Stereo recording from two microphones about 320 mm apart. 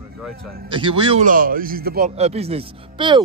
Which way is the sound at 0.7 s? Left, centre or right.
Centre.